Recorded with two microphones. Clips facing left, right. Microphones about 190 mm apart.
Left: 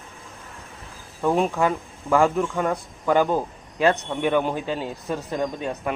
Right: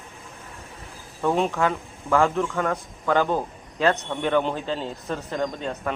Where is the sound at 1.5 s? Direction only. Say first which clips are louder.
Left 2 dB; 15° left (ahead or behind).